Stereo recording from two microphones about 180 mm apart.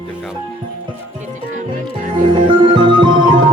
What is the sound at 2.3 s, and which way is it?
Music, 25° right (ahead or behind).